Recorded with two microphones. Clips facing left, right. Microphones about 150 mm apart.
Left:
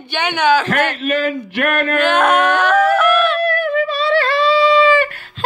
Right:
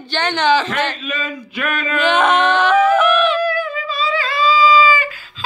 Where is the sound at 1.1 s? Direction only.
75° left (ahead or behind).